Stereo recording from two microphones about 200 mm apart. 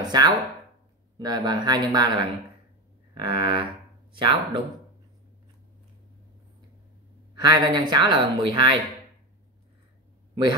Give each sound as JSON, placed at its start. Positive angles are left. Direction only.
{"t": 0.0, "sound": "speech", "side_deg": -20}
{"t": 3.2, "sound": "speech", "side_deg": -25}
{"t": 7.3, "sound": "speech", "side_deg": -20}